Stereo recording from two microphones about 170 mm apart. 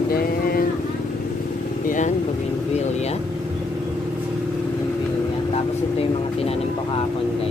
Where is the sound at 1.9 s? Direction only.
45° left (ahead or behind).